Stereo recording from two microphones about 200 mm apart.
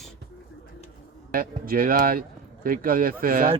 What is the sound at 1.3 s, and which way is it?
A man's voice, 45° right (ahead or behind).